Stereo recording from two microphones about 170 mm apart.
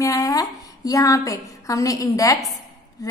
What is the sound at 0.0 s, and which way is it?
A woman's voice, 20° left (ahead or behind).